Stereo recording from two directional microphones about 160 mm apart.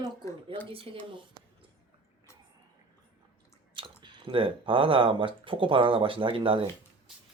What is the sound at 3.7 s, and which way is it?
Speech, 30° right (ahead or behind).